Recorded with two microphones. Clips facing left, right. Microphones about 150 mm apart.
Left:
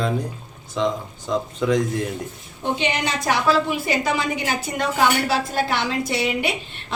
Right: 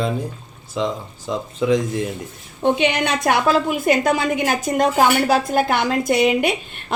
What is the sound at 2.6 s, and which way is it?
A woman's voice, 60° right (ahead or behind).